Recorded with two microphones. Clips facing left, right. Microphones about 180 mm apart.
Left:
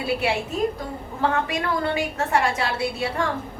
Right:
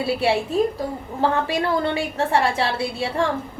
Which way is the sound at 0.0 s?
30° right (ahead or behind).